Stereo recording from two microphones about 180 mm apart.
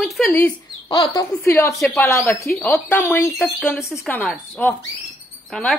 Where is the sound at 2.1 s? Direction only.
15° left (ahead or behind).